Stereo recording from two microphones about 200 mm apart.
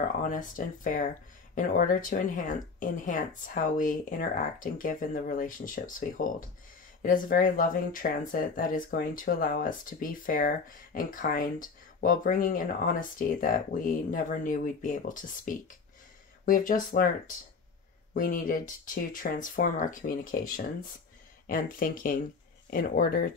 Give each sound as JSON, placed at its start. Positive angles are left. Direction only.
{"t": 0.2, "sound": "speech", "side_deg": 40}
{"t": 18.1, "sound": "speech", "side_deg": 45}